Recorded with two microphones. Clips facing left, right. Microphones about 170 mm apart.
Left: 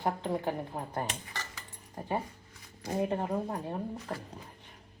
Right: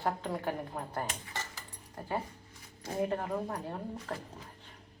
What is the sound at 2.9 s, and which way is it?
Speech, 10° left (ahead or behind).